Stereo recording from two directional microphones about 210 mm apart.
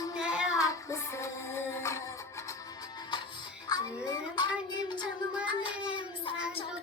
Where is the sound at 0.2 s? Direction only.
5° right (ahead or behind).